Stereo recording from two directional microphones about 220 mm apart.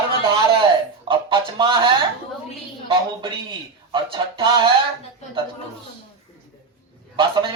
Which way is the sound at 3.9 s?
20° right (ahead or behind).